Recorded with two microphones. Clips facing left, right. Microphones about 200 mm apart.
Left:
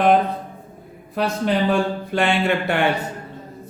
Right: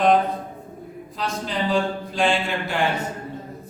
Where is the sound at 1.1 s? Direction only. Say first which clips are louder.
Left 7 dB; 60° left (ahead or behind).